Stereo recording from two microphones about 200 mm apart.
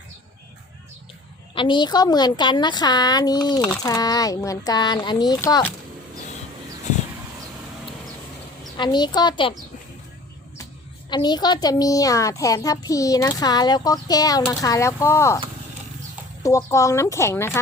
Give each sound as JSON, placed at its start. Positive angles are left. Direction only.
{"t": 1.5, "sound": "a woman's voice", "side_deg": 25}
{"t": 8.8, "sound": "a woman's voice", "side_deg": 20}
{"t": 11.1, "sound": "a woman's voice", "side_deg": 20}
{"t": 16.4, "sound": "speech", "side_deg": 15}